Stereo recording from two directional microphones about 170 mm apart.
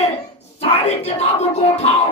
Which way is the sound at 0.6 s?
40° left (ahead or behind).